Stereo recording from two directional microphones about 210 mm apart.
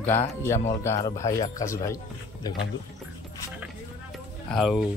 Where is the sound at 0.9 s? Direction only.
10° left (ahead or behind).